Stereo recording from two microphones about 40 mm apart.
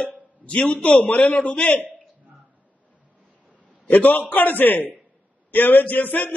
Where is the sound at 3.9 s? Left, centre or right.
Left.